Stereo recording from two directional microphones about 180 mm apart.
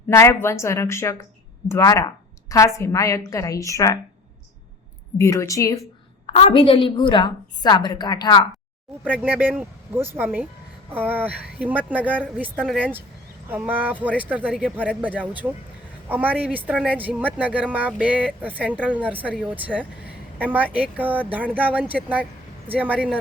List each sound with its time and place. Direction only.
0.1 s a woman's voice: 15° left (ahead or behind)
5.1 s a woman's voice: 15° left (ahead or behind)
6.2 s a woman's voice: 30° left (ahead or behind)
9.0 s speech: 10° right (ahead or behind)